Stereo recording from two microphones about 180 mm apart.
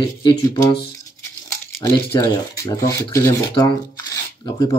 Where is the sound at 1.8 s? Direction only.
20° left (ahead or behind).